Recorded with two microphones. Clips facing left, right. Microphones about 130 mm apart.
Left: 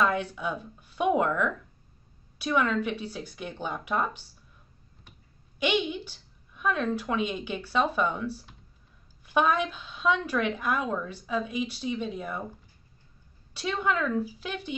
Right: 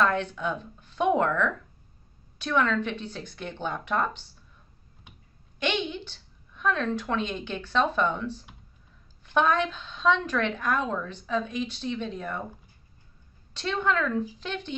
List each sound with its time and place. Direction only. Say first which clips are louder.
0.0 s a woman's voice: right 1 dB; 10° left (ahead or behind)
5.6 s a woman's voice: left 2 dB; 10° left (ahead or behind)
13.5 s a woman's voice: right 1 dB; 10° left (ahead or behind)